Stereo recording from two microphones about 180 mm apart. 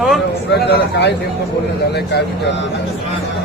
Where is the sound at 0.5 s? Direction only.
65° left (ahead or behind).